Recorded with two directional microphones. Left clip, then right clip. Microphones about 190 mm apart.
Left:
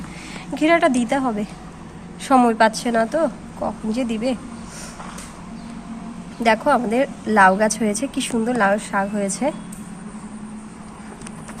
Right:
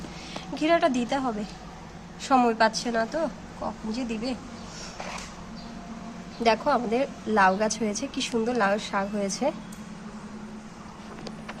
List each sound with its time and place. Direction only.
0.5 s a woman's voice: 15° left (ahead or behind)
6.4 s a woman's voice: 10° left (ahead or behind)